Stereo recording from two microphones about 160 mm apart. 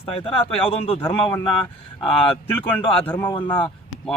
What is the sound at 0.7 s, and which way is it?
Speech, 40° left (ahead or behind).